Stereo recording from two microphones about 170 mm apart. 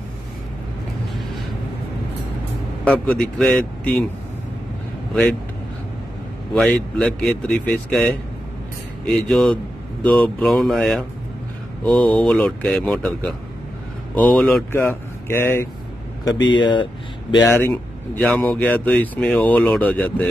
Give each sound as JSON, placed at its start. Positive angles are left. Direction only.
{"t": 2.8, "sound": "a man's voice", "side_deg": 5}
{"t": 6.5, "sound": "a man's voice", "side_deg": 5}
{"t": 9.3, "sound": "a man's voice", "side_deg": 0}
{"t": 16.4, "sound": "speech", "side_deg": 25}
{"t": 17.5, "sound": "speech", "side_deg": 15}